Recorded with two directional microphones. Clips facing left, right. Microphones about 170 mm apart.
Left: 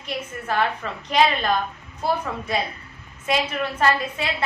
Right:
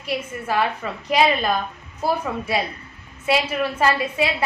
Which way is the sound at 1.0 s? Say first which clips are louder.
Right 1 dB; 10° right (ahead or behind).